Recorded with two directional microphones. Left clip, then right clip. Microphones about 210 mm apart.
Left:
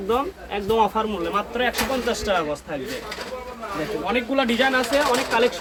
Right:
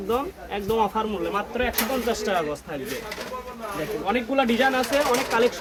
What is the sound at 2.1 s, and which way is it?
Speech, 15° right (ahead or behind).